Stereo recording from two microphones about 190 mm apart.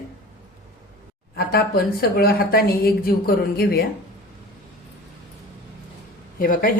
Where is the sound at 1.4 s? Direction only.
55° left (ahead or behind).